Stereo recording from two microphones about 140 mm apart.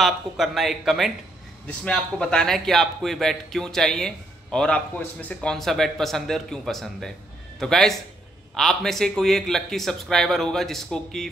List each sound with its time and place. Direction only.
0.0 s a man's voice: centre (ahead or behind)